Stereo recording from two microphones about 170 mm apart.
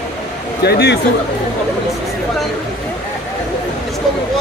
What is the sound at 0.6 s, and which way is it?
Speech, 75° left (ahead or behind).